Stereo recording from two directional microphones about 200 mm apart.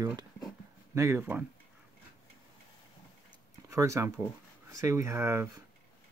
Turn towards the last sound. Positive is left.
turn(degrees=-15)  # may be behind; listen again after turning